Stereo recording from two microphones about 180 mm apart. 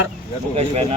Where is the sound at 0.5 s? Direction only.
35° right (ahead or behind).